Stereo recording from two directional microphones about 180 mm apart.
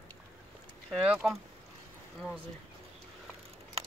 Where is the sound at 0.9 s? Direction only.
5° right (ahead or behind).